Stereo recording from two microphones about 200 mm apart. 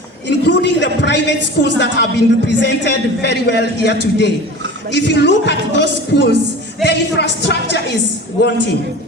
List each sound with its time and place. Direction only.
0.3 s a woman's voice: 60° left (ahead or behind)